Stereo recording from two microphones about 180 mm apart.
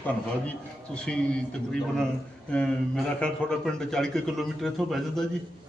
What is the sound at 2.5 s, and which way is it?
Speech, 5° left (ahead or behind).